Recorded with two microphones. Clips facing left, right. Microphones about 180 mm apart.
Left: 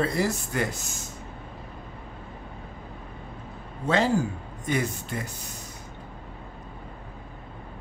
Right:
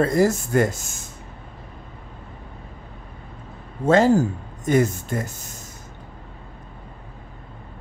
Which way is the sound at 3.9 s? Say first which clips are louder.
Right 7 dB; 45° right (ahead or behind).